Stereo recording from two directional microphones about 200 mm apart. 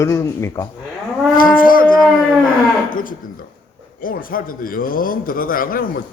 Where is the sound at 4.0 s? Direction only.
45° left (ahead or behind).